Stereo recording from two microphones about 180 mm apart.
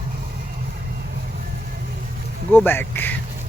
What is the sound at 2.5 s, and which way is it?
Speech, 10° left (ahead or behind).